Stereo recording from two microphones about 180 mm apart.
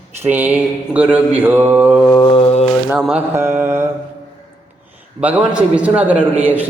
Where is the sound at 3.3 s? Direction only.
15° right (ahead or behind).